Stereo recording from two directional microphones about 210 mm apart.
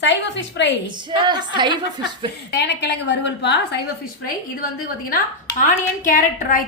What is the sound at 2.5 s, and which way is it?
A woman's voice, 55° left (ahead or behind).